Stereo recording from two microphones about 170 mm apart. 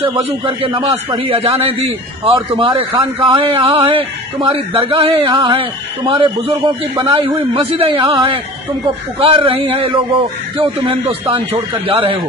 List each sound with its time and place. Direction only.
0.5 s a man's voice: 30° right (ahead or behind)